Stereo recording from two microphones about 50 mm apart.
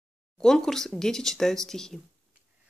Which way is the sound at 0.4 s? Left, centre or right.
Centre.